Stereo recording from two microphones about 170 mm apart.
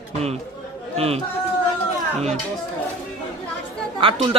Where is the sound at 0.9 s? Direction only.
35° right (ahead or behind).